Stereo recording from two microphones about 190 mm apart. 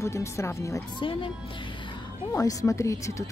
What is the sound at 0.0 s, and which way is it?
A woman's voice, 15° left (ahead or behind).